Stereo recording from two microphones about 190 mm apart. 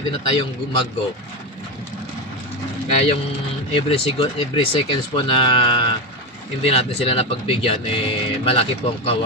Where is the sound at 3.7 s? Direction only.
30° left (ahead or behind).